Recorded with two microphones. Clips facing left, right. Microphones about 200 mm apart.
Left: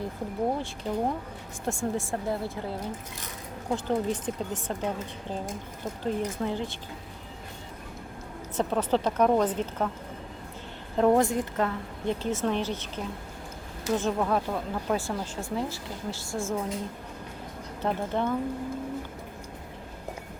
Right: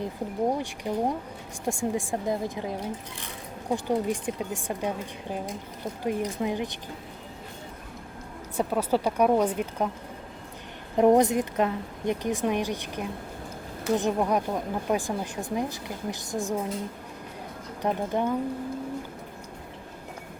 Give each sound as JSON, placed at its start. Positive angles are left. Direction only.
{"t": 0.0, "sound": "speech", "side_deg": -15}
{"t": 6.0, "sound": "speech", "side_deg": -15}
{"t": 8.5, "sound": "speech", "side_deg": -10}
{"t": 10.9, "sound": "speech", "side_deg": -20}
{"t": 17.8, "sound": "speech", "side_deg": -15}